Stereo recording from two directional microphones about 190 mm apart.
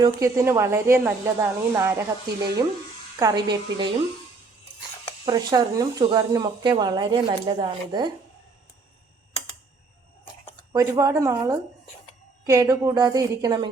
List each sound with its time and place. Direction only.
0.0 s speech: 15° right (ahead or behind)
3.2 s speech: 20° right (ahead or behind)
5.2 s speech: 20° right (ahead or behind)
10.7 s speech: 15° right (ahead or behind)